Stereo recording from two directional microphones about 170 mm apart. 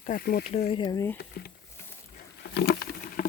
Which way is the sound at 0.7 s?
25° left (ahead or behind).